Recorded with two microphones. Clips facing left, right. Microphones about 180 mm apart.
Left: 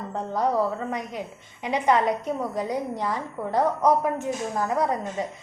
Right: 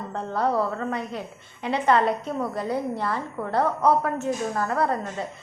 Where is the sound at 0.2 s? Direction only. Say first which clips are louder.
Even; 15° left (ahead or behind).